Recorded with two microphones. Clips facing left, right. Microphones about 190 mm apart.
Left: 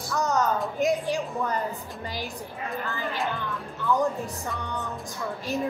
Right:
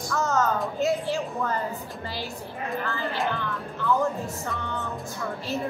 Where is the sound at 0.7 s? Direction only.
15° left (ahead or behind).